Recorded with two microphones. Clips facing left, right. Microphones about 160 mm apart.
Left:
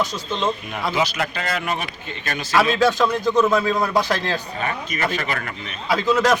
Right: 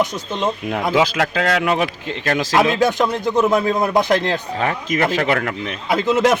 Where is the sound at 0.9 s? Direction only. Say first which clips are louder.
Right 6 dB; 90° right.